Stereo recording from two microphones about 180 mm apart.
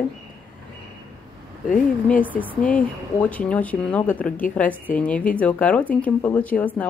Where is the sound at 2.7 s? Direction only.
10° left (ahead or behind).